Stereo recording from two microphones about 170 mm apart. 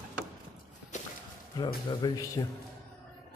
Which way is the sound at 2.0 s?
25° left (ahead or behind).